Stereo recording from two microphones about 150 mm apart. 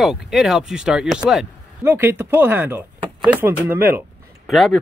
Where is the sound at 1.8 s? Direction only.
15° right (ahead or behind).